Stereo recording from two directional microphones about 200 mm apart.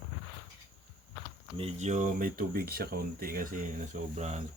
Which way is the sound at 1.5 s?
30° right (ahead or behind).